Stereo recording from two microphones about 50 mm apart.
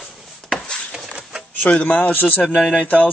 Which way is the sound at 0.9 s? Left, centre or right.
Centre.